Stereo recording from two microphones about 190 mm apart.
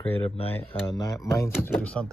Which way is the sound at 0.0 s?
30° left (ahead or behind).